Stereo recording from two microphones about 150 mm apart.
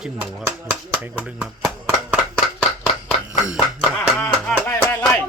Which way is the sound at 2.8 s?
5° right (ahead or behind).